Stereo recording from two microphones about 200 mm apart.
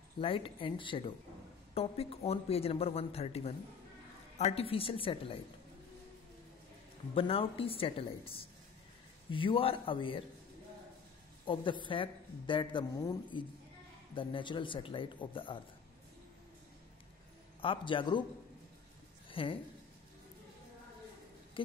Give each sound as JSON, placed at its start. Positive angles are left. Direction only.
{"t": 0.2, "sound": "a woman's voice", "side_deg": 25}
{"t": 7.2, "sound": "a woman's voice", "side_deg": 30}
{"t": 11.4, "sound": "a woman's voice", "side_deg": 25}
{"t": 17.6, "sound": "a woman's voice", "side_deg": 25}
{"t": 19.3, "sound": "a woman's voice", "side_deg": 25}
{"t": 21.6, "sound": "a sound", "side_deg": 25}